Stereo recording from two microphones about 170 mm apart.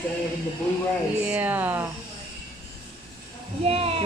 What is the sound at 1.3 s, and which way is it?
Speech, 10° right (ahead or behind).